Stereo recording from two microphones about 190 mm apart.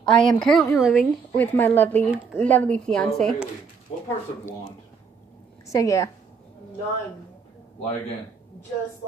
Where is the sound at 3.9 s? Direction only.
30° left (ahead or behind).